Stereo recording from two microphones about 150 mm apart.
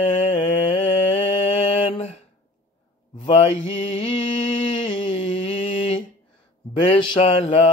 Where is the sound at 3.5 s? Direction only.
45° left (ahead or behind).